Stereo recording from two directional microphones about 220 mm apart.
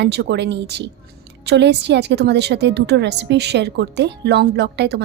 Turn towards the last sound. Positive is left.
turn(degrees=-50)  # may be behind; listen again after turning